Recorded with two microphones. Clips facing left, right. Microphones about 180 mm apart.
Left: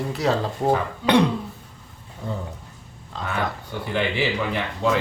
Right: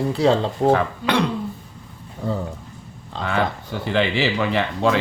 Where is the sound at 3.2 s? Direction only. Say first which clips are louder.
Right 4 dB; 90° right.